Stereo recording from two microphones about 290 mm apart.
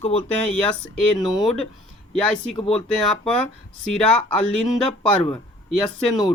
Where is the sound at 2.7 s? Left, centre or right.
Centre.